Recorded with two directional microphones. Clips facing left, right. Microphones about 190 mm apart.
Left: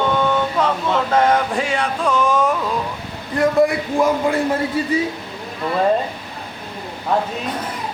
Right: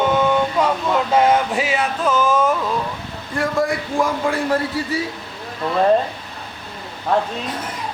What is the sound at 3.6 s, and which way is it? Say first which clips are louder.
Speech: left 2 dB; 20° left (ahead or behind).